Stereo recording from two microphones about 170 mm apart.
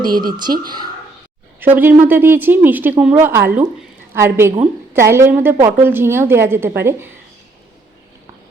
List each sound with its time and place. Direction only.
0.0 s speech: 25° right (ahead or behind)
1.5 s a woman's voice: 10° right (ahead or behind)